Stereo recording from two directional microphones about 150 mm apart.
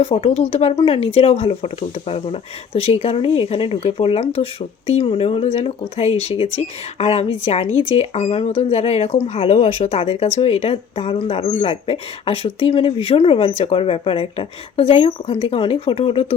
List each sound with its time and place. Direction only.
0.0 s a woman's voice: 40° left (ahead or behind)